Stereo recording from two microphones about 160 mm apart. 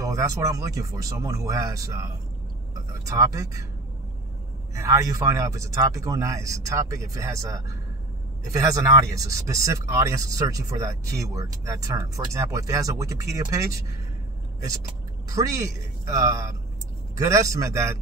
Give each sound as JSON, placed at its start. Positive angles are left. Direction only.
{"t": 0.0, "sound": "speech", "side_deg": -20}
{"t": 4.7, "sound": "speech", "side_deg": -20}
{"t": 15.2, "sound": "speech", "side_deg": -20}